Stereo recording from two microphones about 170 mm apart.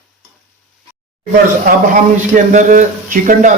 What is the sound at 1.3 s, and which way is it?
Speech, 55° right (ahead or behind).